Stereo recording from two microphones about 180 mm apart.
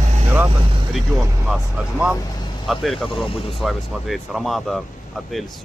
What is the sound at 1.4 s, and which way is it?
Speech, 5° right (ahead or behind).